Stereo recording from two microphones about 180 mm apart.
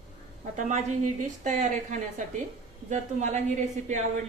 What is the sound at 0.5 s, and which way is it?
A woman's voice, 40° right (ahead or behind).